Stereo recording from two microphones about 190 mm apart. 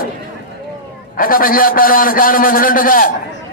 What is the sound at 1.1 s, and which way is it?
A man's voice, 50° left (ahead or behind).